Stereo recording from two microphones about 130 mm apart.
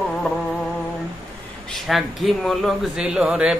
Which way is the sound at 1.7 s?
Centre (ahead or behind).